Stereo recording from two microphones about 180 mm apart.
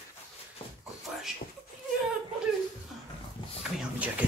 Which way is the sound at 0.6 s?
35° left (ahead or behind).